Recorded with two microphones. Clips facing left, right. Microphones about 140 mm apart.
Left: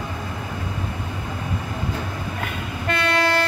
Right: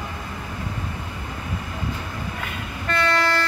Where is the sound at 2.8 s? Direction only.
55° left (ahead or behind).